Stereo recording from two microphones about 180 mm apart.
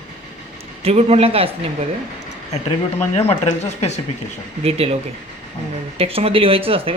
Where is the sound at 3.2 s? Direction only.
35° left (ahead or behind).